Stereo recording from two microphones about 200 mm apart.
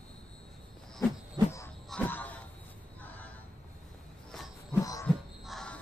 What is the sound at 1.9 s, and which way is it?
Music, 10° left (ahead or behind).